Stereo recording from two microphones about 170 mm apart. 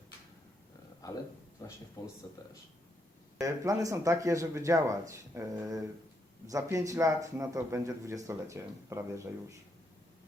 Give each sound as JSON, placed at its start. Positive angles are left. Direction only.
{"t": 1.6, "sound": "a sound", "side_deg": 20}
{"t": 2.0, "sound": "speech", "side_deg": 25}
{"t": 3.4, "sound": "a man's voice", "side_deg": -20}